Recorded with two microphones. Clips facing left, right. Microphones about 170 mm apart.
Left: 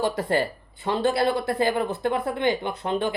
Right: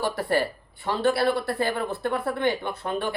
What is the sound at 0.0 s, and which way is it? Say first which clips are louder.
Speech: left 1 dB; 20° left (ahead or behind).